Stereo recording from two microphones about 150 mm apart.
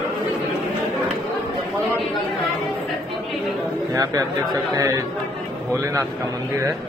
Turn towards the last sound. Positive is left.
turn(degrees=-20)  # may be behind; listen again after turning